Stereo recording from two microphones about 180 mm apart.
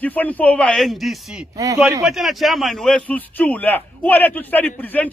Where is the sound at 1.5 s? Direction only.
20° right (ahead or behind).